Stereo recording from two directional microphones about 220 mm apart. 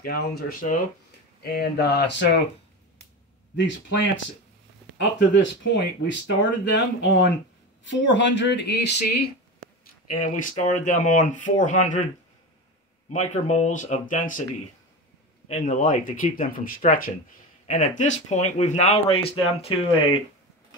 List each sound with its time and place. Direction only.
0.0 s speech: 45° left (ahead or behind)
3.5 s speech: 55° left (ahead or behind)
10.0 s speech: 35° left (ahead or behind)
13.1 s speech: 30° left (ahead or behind)
15.4 s speech: 30° left (ahead or behind)